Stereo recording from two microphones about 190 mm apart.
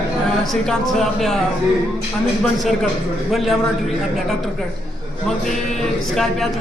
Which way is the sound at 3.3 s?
Centre (ahead or behind).